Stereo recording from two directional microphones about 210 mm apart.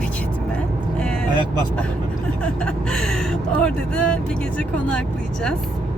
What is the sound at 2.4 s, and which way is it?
Speech, 5° left (ahead or behind).